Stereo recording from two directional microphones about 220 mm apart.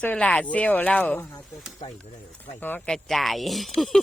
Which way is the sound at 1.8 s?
25° left (ahead or behind).